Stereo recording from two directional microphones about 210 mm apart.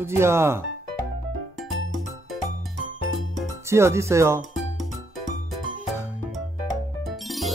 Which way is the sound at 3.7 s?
15° right (ahead or behind).